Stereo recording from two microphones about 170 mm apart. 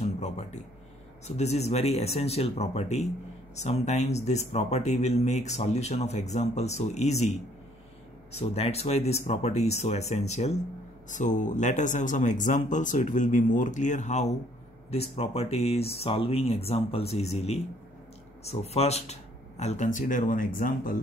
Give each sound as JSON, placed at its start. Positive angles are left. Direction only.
{"t": 0.0, "sound": "a sound", "side_deg": 40}
{"t": 1.2, "sound": "speech", "side_deg": 40}
{"t": 8.3, "sound": "speech", "side_deg": 35}